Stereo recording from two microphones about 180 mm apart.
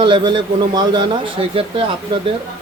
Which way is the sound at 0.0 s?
25° right (ahead or behind).